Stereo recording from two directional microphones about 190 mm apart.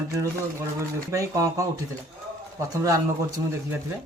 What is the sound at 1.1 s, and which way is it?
Speech, 15° right (ahead or behind).